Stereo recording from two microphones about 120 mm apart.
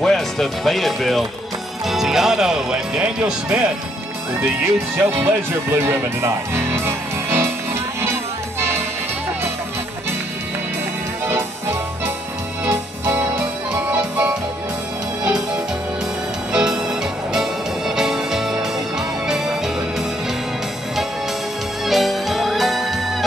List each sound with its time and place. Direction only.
0.0 s speech: 5° left (ahead or behind)
4.9 s speech: 20° right (ahead or behind)
8.0 s music: 20° right (ahead or behind)
12.6 s music: 20° right (ahead or behind); by 19.5 s 5° right (ahead or behind)
21.8 s music: centre (ahead or behind)